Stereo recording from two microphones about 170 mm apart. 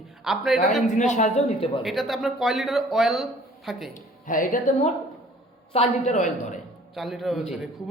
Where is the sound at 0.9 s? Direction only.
45° left (ahead or behind).